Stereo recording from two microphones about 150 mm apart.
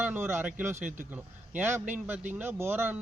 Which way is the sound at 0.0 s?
15° right (ahead or behind).